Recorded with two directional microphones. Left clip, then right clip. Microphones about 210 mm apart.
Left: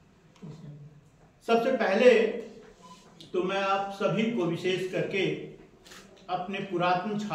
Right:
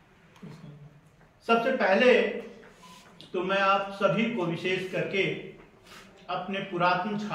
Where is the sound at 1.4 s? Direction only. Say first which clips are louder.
Right 1 dB; 15° left (ahead or behind).